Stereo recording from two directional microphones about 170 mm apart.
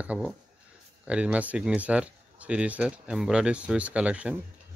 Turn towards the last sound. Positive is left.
turn(degrees=-5)  # may be behind; listen again after turning